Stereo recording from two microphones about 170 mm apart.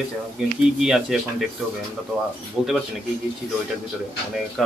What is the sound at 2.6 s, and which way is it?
Speech, 5° right (ahead or behind).